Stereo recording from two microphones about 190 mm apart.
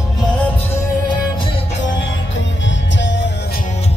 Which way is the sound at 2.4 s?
75° left (ahead or behind).